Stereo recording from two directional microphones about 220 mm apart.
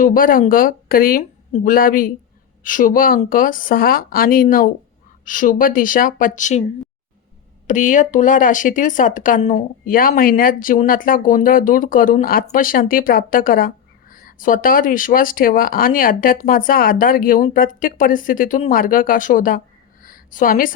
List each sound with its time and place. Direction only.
0.0 s speech: 40° left (ahead or behind)
7.7 s speech: 35° left (ahead or behind)